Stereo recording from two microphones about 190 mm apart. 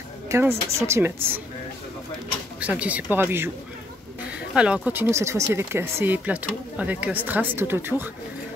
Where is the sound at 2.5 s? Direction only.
5° right (ahead or behind).